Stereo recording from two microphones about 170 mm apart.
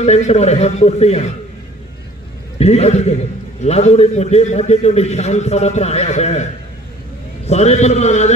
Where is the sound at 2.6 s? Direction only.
40° left (ahead or behind).